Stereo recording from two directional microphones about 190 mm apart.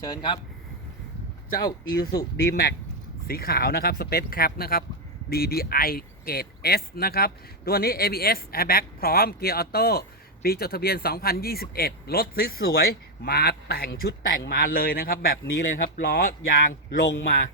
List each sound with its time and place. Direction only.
0.0 s speech: 20° left (ahead or behind)
1.5 s speech: 50° left (ahead or behind)